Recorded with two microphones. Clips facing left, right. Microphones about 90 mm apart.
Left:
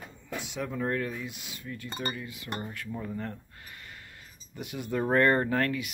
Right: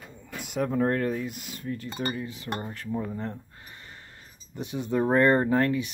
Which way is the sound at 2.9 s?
20° right (ahead or behind).